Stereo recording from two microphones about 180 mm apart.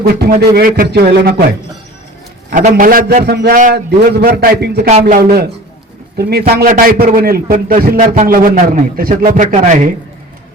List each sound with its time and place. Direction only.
0.0 s speech: 60° right (ahead or behind)
2.6 s a man's voice: 50° right (ahead or behind); by 4.9 s 65° right (ahead or behind)
4.9 s a man's voice: 50° right (ahead or behind)